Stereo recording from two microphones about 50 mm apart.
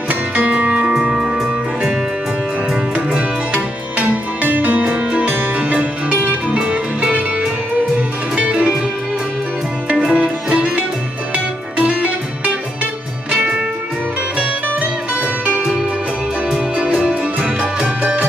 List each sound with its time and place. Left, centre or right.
0.1 s music: right
3.2 s music: right
8.4 s music: right
10.1 s music: right
13.3 s music: right
16.5 s music: right
16.9 s music: centre